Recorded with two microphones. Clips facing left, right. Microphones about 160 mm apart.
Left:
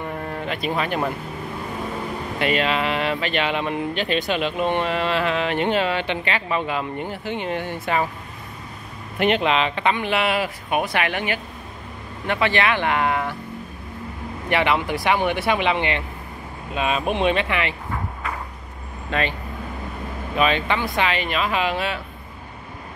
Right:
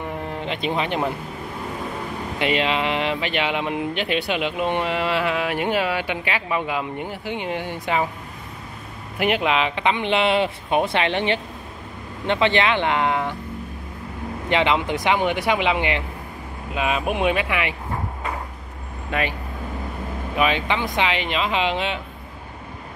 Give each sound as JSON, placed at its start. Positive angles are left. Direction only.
{"t": 0.2, "sound": "speech", "side_deg": -20}
{"t": 2.3, "sound": "speech", "side_deg": -15}
{"t": 9.2, "sound": "speech", "side_deg": -10}
{"t": 14.5, "sound": "speech", "side_deg": -20}
{"t": 19.0, "sound": "speech", "side_deg": -10}
{"t": 20.3, "sound": "speech", "side_deg": -15}